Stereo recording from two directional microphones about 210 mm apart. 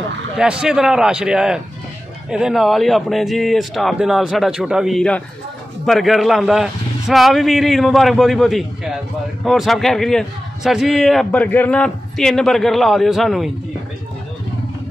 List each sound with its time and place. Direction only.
0.4 s a man's voice: 5° right (ahead or behind)